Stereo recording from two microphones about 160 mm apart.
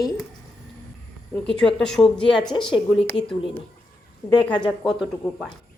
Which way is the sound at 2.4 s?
30° left (ahead or behind).